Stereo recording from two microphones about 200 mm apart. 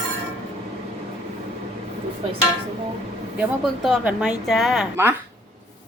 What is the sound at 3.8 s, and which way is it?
A woman's voice, 5° right (ahead or behind).